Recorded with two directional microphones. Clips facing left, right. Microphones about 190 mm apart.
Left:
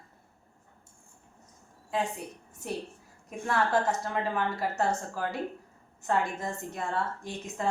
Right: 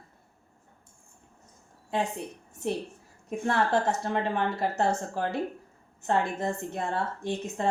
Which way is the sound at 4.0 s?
25° right (ahead or behind).